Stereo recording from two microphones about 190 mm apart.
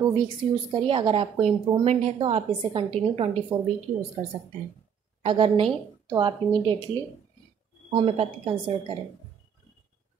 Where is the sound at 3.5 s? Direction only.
10° right (ahead or behind).